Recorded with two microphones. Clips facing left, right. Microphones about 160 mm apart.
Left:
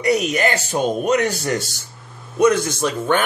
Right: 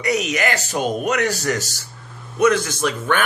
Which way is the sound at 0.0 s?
35° left (ahead or behind).